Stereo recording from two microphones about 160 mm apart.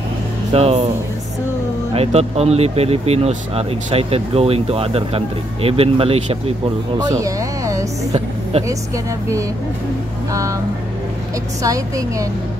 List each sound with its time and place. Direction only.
0.5 s speech: 40° right (ahead or behind)
2.0 s speech: 40° right (ahead or behind)
7.0 s speech: 20° right (ahead or behind)
11.6 s a woman's voice: 20° right (ahead or behind)